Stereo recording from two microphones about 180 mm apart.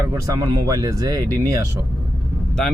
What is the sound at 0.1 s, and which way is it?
Speech, 20° right (ahead or behind).